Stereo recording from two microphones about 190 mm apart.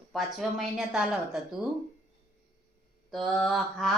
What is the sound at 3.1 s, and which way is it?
Speech, centre (ahead or behind).